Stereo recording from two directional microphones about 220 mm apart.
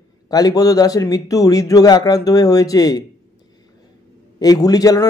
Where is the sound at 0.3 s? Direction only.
15° left (ahead or behind).